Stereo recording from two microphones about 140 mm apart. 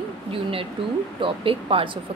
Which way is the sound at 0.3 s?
40° right (ahead or behind).